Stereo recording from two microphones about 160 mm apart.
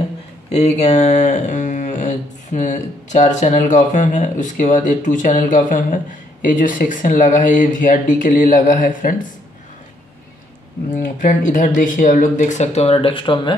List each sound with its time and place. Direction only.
0.5 s speech: 45° left (ahead or behind)
11.1 s speech: 55° left (ahead or behind); by 13.6 s 30° left (ahead or behind)